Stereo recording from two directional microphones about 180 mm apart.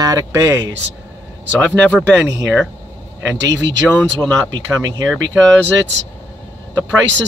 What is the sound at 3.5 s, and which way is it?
Speech, 75° right (ahead or behind).